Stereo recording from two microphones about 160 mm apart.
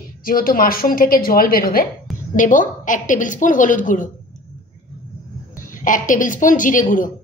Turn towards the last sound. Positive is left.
turn(degrees=55)  # may be behind; listen again after turning